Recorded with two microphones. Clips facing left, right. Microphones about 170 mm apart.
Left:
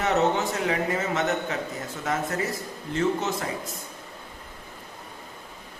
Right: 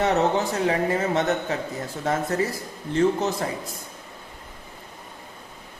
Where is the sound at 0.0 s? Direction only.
35° right (ahead or behind).